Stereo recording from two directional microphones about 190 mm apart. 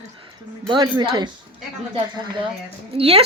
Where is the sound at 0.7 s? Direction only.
25° right (ahead or behind).